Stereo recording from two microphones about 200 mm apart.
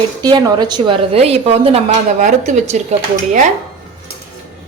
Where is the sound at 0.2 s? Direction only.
20° right (ahead or behind); by 2.8 s 35° right (ahead or behind).